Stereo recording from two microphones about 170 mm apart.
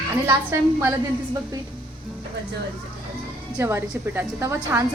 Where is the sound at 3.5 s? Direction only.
15° right (ahead or behind).